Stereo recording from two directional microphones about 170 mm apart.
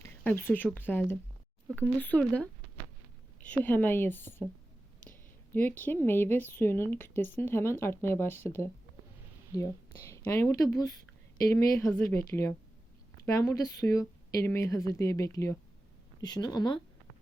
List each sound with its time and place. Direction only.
0.3 s a woman's voice: 10° left (ahead or behind)